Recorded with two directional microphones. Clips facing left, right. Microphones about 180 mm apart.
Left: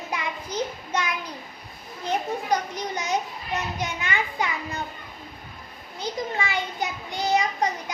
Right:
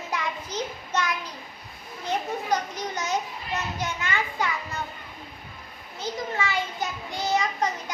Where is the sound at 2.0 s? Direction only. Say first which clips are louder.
Left 2 dB; 15° left (ahead or behind).